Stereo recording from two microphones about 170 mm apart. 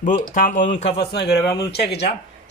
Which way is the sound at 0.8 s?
80° left.